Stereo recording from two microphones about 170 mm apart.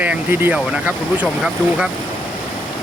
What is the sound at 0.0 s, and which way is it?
Speech, 10° right (ahead or behind).